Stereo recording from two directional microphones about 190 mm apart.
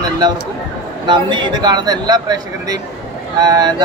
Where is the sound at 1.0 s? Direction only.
25° right (ahead or behind).